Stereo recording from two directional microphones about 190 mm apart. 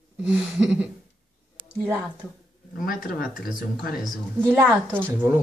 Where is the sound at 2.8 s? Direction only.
50° left (ahead or behind).